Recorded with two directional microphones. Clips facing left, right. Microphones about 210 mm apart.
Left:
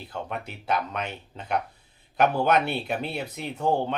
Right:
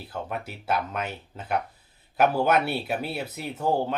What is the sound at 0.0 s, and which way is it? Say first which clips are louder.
Speech: right 1 dB; 5° right (ahead or behind).